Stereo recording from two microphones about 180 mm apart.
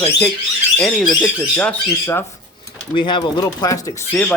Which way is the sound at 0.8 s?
Centre (ahead or behind).